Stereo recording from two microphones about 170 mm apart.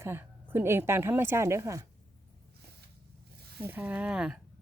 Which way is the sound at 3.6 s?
10° right (ahead or behind).